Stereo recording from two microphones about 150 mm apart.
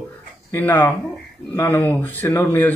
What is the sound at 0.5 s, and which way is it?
Speech, 20° left (ahead or behind).